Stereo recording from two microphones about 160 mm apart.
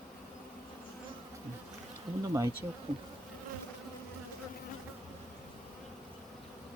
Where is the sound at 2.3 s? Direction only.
20° right (ahead or behind).